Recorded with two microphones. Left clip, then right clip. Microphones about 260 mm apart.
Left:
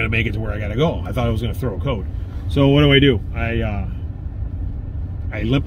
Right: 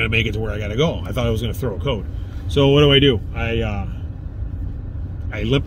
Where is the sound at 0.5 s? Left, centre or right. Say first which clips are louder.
Left 1 dB; centre.